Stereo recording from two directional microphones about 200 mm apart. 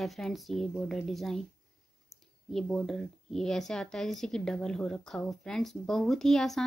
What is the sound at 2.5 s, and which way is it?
A woman's voice, centre (ahead or behind).